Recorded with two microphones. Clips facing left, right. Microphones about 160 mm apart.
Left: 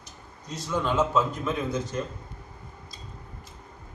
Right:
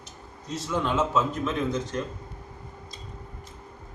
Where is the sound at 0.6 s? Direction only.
Centre (ahead or behind).